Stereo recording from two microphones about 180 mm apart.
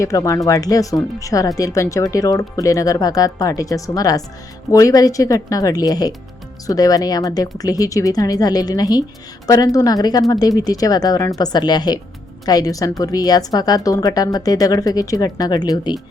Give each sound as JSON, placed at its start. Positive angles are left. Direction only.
{"t": 0.0, "sound": "speech", "side_deg": 20}